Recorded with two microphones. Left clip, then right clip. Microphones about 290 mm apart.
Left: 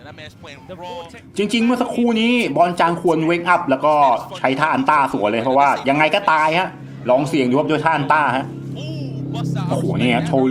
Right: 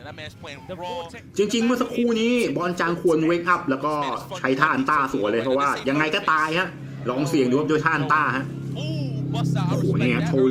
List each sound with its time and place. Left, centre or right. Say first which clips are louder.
0.8 s speech: even; centre
4.0 s speech: left 10 dB; centre